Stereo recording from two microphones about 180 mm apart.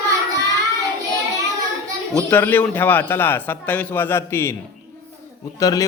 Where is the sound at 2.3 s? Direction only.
10° left (ahead or behind).